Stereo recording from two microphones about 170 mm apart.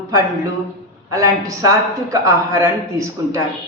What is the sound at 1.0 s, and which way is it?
Speech, 20° right (ahead or behind).